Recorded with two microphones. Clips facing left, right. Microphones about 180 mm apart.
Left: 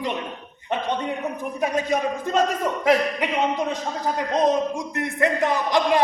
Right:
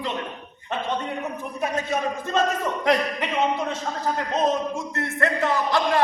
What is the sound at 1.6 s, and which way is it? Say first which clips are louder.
A man's voice: left 3 dB; 15° left (ahead or behind).